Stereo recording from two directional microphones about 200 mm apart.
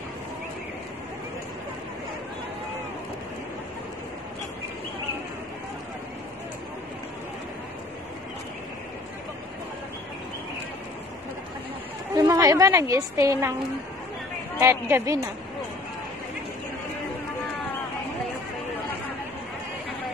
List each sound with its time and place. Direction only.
12.2 s a woman's voice: 15° right (ahead or behind)
14.6 s a woman's voice: 10° right (ahead or behind)